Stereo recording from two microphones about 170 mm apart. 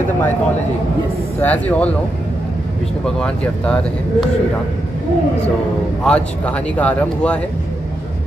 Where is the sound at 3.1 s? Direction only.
5° left (ahead or behind).